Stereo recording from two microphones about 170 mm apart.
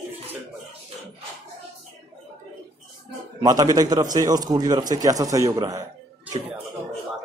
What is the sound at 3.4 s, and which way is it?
Speech, 25° right (ahead or behind).